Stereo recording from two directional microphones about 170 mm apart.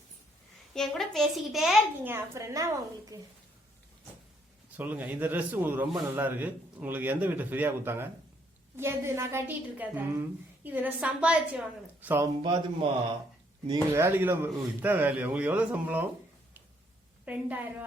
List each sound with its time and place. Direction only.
0.7 s a child's voice: centre (ahead or behind)
2.0 s a woman's voice: 15° right (ahead or behind)
4.8 s a woman's voice: 10° right (ahead or behind)
12.4 s a man's voice: 30° right (ahead or behind)
13.9 s a woman's voice: 15° right (ahead or behind)
17.2 s a woman's voice: 10° right (ahead or behind)